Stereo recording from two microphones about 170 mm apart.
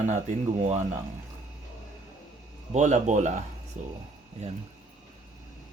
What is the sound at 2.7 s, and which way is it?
Speech, 45° right (ahead or behind).